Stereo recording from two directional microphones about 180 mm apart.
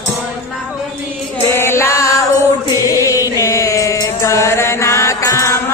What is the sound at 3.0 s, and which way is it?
Chant, 20° left (ahead or behind).